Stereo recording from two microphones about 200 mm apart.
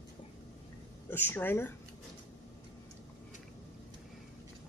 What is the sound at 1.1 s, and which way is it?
Speech, 10° left (ahead or behind).